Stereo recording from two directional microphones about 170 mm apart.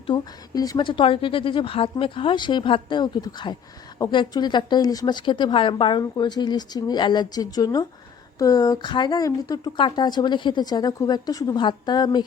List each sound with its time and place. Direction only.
0.1 s a woman's voice: 20° left (ahead or behind)